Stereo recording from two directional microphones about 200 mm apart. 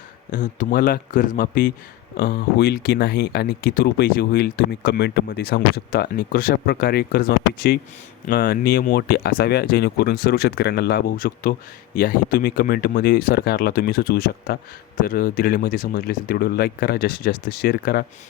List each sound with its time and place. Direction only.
0.3 s speech: 40° left (ahead or behind)